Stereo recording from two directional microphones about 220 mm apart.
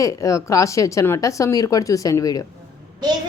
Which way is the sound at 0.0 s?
15° left (ahead or behind).